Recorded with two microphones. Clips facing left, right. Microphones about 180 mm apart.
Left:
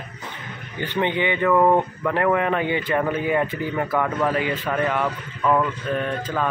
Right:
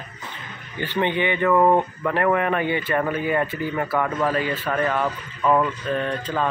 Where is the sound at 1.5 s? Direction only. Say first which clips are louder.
Even; centre (ahead or behind).